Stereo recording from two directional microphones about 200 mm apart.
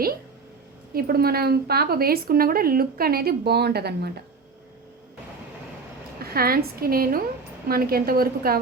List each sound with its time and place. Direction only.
0.9 s a woman's voice: 50° right (ahead or behind)
6.1 s a woman's voice: 50° right (ahead or behind)